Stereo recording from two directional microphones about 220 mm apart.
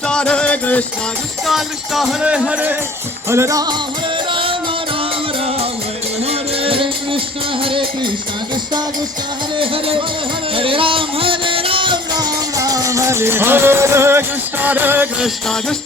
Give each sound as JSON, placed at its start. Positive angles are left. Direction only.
{"t": 0.1, "sound": "music", "side_deg": 5}
{"t": 1.5, "sound": "speech", "side_deg": 0}
{"t": 3.2, "sound": "music", "side_deg": -10}
{"t": 6.6, "sound": "music", "side_deg": -25}
{"t": 9.6, "sound": "music", "side_deg": -25}